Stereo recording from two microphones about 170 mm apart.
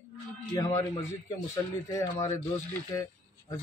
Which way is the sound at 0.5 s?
15° left (ahead or behind).